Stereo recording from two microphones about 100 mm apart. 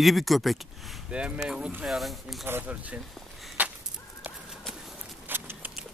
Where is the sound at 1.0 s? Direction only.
10° right (ahead or behind).